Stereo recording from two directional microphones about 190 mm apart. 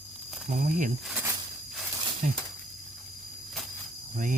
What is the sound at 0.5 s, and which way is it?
Speech, 45° right (ahead or behind).